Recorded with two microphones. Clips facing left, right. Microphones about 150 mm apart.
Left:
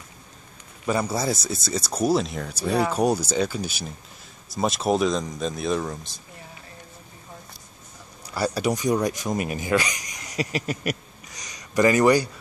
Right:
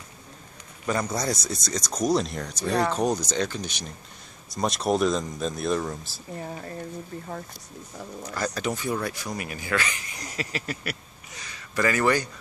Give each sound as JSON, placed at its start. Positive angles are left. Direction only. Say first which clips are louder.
{"t": 0.8, "sound": "speech", "louder": "left 2 dB", "side_deg": 10}
{"t": 8.5, "sound": "speech", "louder": "left 7 dB", "side_deg": 15}